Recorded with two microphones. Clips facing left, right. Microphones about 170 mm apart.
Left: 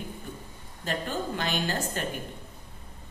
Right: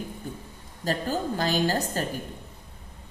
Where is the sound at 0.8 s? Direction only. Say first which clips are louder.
Right 4 dB; 35° right (ahead or behind).